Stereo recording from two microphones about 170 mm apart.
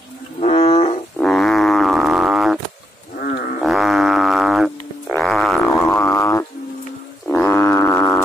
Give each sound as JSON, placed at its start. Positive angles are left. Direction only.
{"t": 0.4, "sound": "wild animals", "side_deg": 40}
{"t": 1.2, "sound": "wild animals", "side_deg": 5}
{"t": 3.2, "sound": "wild animals", "side_deg": 65}
{"t": 3.6, "sound": "a sound", "side_deg": 0}
{"t": 7.2, "sound": "wild animals", "side_deg": 10}